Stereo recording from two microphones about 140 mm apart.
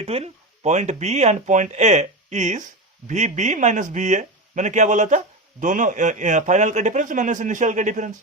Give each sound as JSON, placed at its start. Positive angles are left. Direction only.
{"t": 0.0, "sound": "speech", "side_deg": -45}